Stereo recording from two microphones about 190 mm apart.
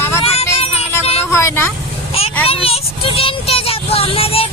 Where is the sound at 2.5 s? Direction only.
30° left (ahead or behind).